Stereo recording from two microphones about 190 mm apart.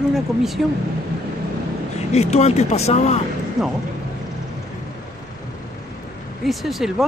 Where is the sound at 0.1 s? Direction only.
Centre (ahead or behind).